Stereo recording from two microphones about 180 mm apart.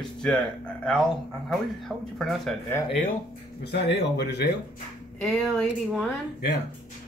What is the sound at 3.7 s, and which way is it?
Speech, 65° left (ahead or behind).